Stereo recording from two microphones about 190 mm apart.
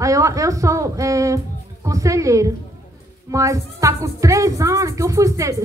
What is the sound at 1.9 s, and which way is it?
Speech, 15° right (ahead or behind).